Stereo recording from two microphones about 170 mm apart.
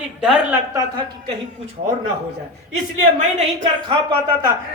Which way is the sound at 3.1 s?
45° right (ahead or behind).